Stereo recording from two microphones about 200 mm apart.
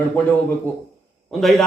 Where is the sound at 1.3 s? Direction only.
Centre (ahead or behind).